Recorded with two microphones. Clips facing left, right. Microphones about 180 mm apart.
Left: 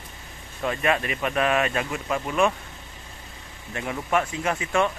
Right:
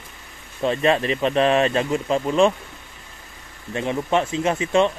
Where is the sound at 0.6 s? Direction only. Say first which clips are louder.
Right 5 dB; 25° right (ahead or behind).